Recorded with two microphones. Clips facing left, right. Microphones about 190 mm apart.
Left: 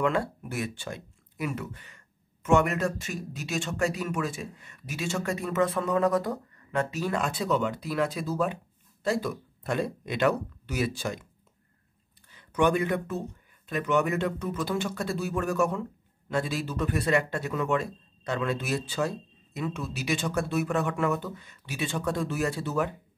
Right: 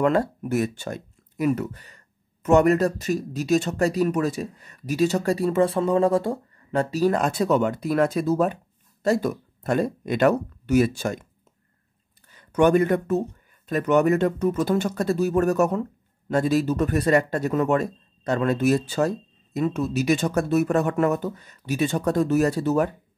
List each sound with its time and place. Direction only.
0.0 s speech: 40° right (ahead or behind)
12.3 s speech: 45° right (ahead or behind)